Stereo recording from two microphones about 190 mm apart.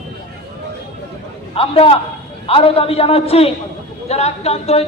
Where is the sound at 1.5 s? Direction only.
30° left (ahead or behind).